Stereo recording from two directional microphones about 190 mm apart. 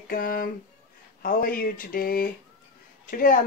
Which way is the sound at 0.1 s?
50° left (ahead or behind).